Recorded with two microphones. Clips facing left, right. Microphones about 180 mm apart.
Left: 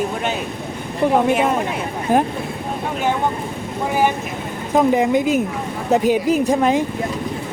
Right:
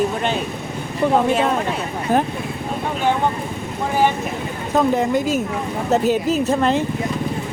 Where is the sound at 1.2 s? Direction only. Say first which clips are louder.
Left 1 dB; 10° left (ahead or behind).